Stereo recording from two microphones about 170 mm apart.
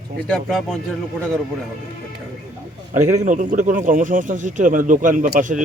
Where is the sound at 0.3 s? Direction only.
Centre (ahead or behind).